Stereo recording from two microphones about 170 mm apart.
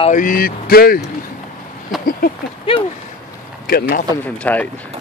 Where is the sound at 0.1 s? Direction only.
50° left (ahead or behind).